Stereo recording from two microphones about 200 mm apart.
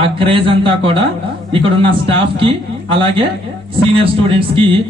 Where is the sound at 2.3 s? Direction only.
25° right (ahead or behind).